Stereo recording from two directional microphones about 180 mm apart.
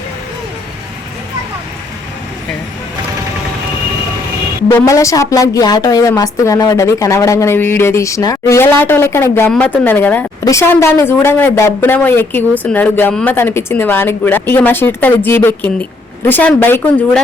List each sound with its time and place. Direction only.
4.7 s a woman's voice: 15° left (ahead or behind)